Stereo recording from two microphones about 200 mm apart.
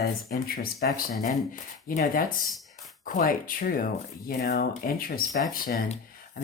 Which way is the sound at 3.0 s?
45° left (ahead or behind).